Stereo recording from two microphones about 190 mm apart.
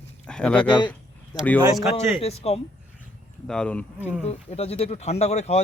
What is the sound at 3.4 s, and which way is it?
Speech, 5° left (ahead or behind).